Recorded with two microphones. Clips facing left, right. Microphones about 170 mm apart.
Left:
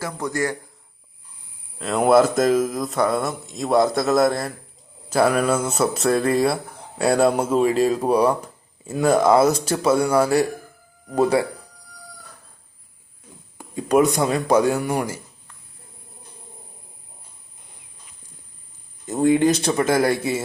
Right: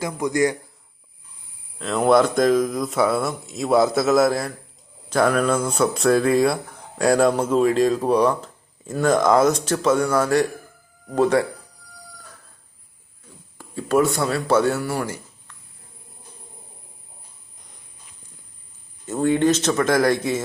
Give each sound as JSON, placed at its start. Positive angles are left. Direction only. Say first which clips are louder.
{"t": 0.0, "sound": "a man's voice", "louder": "right 4 dB", "side_deg": -15}
{"t": 1.8, "sound": "speech", "louder": "left 1 dB", "side_deg": 5}
{"t": 13.6, "sound": "speech", "louder": "left 2 dB", "side_deg": 15}
{"t": 19.0, "sound": "speech", "louder": "left 1 dB", "side_deg": 15}